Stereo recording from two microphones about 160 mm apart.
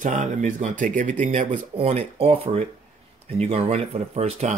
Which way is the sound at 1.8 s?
40° right (ahead or behind).